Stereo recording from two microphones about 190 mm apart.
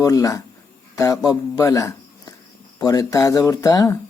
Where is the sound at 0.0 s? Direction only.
15° left (ahead or behind).